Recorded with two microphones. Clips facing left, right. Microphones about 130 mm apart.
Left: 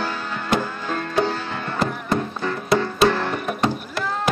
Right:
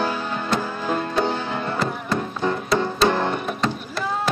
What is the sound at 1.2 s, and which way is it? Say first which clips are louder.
Music: right 2 dB; 20° right (ahead or behind).